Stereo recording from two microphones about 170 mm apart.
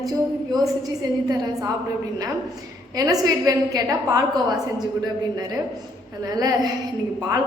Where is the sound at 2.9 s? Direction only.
20° right (ahead or behind).